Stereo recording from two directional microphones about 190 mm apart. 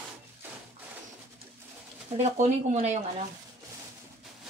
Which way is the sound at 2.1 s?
35° right (ahead or behind).